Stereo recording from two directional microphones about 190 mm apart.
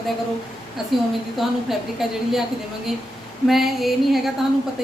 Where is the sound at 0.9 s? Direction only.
Centre (ahead or behind).